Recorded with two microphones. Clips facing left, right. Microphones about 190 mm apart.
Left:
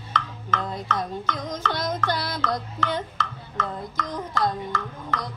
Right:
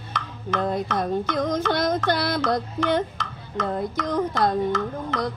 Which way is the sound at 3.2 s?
15° right (ahead or behind).